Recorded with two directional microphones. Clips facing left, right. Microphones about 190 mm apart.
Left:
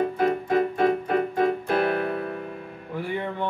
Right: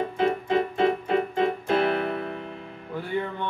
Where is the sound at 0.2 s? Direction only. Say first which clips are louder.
Right 1 dB; 25° right (ahead or behind).